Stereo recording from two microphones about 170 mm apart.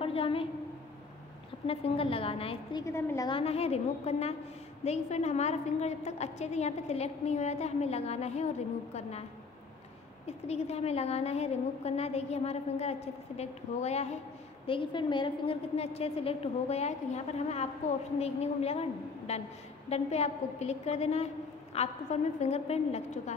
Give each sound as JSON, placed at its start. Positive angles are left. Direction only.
{"t": 0.0, "sound": "a woman's voice", "side_deg": 35}
{"t": 1.7, "sound": "a woman's voice", "side_deg": 35}
{"t": 2.8, "sound": "a woman's voice", "side_deg": 15}
{"t": 3.3, "sound": "a woman's voice", "side_deg": 35}
{"t": 10.2, "sound": "a woman's voice", "side_deg": 40}
{"t": 14.7, "sound": "a woman's voice", "side_deg": 30}